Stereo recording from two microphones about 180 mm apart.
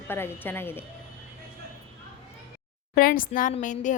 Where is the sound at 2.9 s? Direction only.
50° left (ahead or behind).